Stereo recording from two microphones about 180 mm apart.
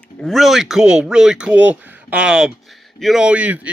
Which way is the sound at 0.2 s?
Centre (ahead or behind).